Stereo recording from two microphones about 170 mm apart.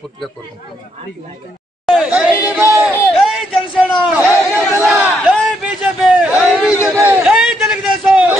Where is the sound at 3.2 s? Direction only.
Centre (ahead or behind).